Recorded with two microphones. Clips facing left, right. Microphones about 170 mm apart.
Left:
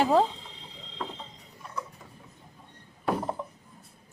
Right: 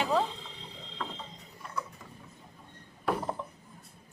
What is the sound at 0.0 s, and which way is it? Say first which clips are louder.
Speech: left 6 dB; 40° left (ahead or behind).